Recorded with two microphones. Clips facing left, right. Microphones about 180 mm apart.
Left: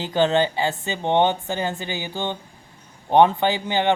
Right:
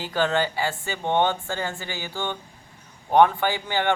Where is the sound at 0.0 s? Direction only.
20° left (ahead or behind).